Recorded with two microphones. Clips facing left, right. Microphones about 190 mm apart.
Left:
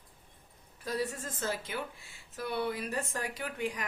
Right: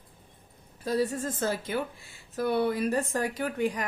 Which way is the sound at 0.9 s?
35° right (ahead or behind).